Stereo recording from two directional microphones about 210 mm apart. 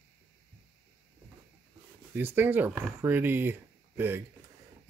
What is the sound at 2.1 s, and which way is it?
Speech, 10° right (ahead or behind).